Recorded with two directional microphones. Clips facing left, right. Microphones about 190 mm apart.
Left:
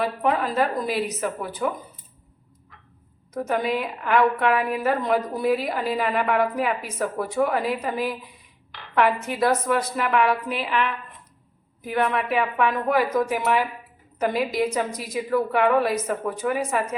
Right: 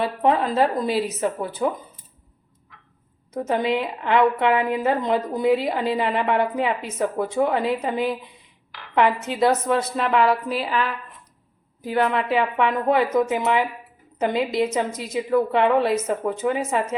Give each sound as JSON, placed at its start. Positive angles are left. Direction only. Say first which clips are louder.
{"t": 0.0, "sound": "a woman's voice", "louder": "right 3 dB", "side_deg": -25}
{"t": 3.3, "sound": "a woman's voice", "louder": "right 2 dB", "side_deg": -25}